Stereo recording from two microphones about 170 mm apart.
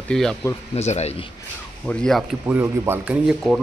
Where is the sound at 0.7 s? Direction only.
40° left (ahead or behind).